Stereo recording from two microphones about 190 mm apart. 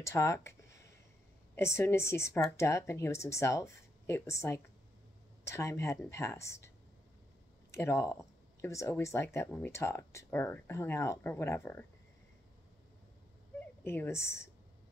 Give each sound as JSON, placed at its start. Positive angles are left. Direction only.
{"t": 0.0, "sound": "a sound", "side_deg": 15}
{"t": 1.5, "sound": "speech", "side_deg": 15}
{"t": 7.7, "sound": "speech", "side_deg": 15}
{"t": 13.8, "sound": "speech", "side_deg": 10}